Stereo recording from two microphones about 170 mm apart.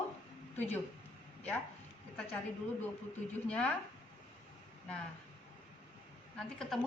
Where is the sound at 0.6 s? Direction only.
10° left (ahead or behind).